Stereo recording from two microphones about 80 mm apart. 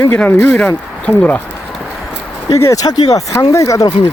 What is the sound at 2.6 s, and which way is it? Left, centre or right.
Speech, left.